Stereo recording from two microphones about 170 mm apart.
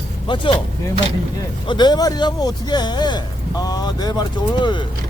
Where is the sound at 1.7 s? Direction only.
25° left (ahead or behind).